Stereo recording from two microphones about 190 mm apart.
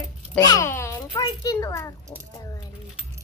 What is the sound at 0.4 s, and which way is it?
A child's voice, 20° left (ahead or behind).